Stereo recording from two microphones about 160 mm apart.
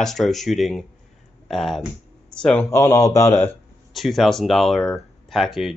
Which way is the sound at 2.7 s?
20° left (ahead or behind).